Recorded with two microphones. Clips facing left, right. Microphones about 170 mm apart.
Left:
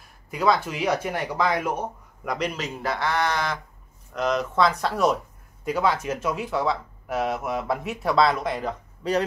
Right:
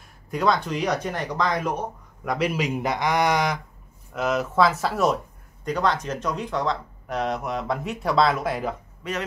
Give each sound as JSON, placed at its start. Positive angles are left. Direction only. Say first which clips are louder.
{"t": 0.3, "sound": "speech", "louder": "even", "side_deg": 5}
{"t": 2.2, "sound": "speech", "louder": "right 4 dB", "side_deg": -5}
{"t": 9.0, "sound": "a man's voice", "louder": "left 7 dB", "side_deg": 35}